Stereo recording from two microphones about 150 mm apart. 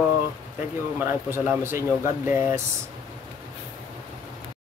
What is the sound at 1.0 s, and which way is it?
Speech, 15° right (ahead or behind).